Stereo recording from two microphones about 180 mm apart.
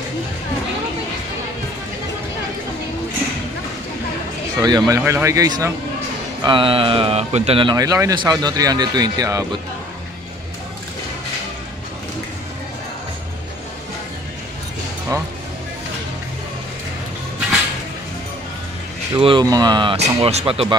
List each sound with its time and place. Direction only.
4.6 s speech: 20° right (ahead or behind)
19.1 s speech: 25° right (ahead or behind)